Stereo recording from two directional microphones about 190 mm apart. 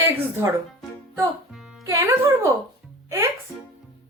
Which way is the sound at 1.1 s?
Centre (ahead or behind).